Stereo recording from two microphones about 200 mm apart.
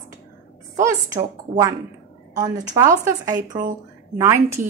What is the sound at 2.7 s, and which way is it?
Speech, 15° right (ahead or behind).